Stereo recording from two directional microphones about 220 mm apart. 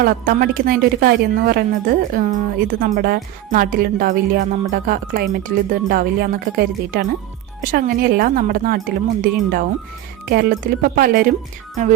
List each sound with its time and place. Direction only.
0.0 s a woman's voice: 40° right (ahead or behind)